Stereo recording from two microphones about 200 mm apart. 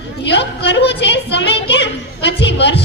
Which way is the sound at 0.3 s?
60° left (ahead or behind).